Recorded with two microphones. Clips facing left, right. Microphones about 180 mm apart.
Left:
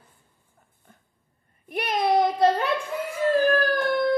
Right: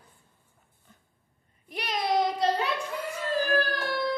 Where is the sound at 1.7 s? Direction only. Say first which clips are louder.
Left 5 dB; 55° left (ahead or behind).